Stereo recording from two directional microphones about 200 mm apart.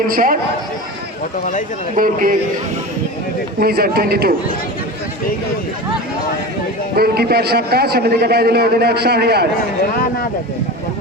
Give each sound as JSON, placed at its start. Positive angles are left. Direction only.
{"t": 0.1, "sound": "a man's voice", "side_deg": -45}
{"t": 2.0, "sound": "a man's voice", "side_deg": -45}
{"t": 3.6, "sound": "a man's voice", "side_deg": -50}
{"t": 6.9, "sound": "a man's voice", "side_deg": -50}